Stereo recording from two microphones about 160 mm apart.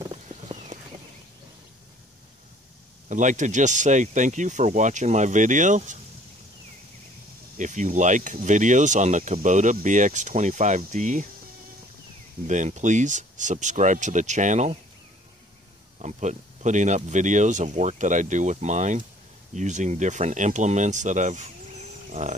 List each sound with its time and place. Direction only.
0.1 s clip-clop: 45° right (ahead or behind)
3.1 s speech: 50° right (ahead or behind)
7.5 s speech: 50° right (ahead or behind)
12.4 s speech: 50° right (ahead or behind)
16.0 s speech: 45° right (ahead or behind)